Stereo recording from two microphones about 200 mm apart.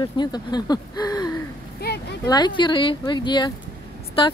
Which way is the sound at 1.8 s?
55° left (ahead or behind).